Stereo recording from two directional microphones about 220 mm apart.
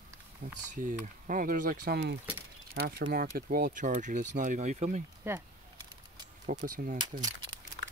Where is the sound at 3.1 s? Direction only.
40° right (ahead or behind).